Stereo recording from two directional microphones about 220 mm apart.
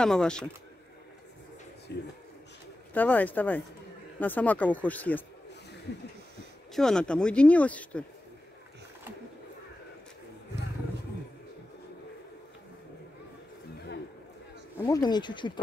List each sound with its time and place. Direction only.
0.0 s speech: 5° left (ahead or behind)
1.9 s speech: 50° left (ahead or behind)
2.9 s speech: 5° left (ahead or behind)
6.7 s speech: centre (ahead or behind)
14.8 s speech: 15° left (ahead or behind)